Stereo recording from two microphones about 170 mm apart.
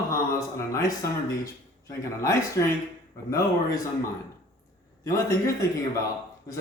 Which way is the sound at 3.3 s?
20° left (ahead or behind).